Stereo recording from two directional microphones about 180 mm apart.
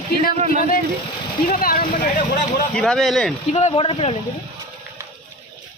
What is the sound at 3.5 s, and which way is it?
Speech, 40° left (ahead or behind).